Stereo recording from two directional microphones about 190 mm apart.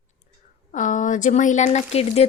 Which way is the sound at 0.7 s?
40° left (ahead or behind).